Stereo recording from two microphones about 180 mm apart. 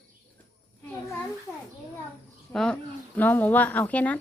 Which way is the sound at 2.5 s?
5° left (ahead or behind).